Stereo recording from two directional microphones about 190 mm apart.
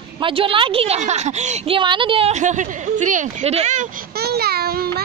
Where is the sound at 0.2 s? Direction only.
30° right (ahead or behind).